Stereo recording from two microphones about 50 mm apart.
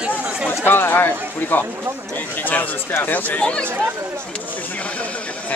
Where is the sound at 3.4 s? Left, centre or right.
Left.